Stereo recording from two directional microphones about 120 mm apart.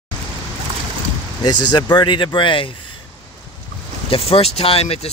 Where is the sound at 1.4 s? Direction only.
35° left (ahead or behind).